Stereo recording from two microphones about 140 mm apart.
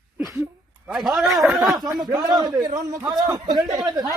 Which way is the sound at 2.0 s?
30° right (ahead or behind).